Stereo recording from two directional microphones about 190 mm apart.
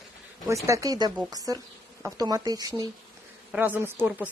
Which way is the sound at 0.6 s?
15° right (ahead or behind).